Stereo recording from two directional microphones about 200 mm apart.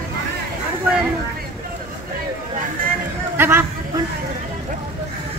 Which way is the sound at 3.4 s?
10° right (ahead or behind).